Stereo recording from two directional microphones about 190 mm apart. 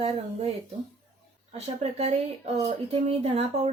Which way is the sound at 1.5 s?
35° right (ahead or behind).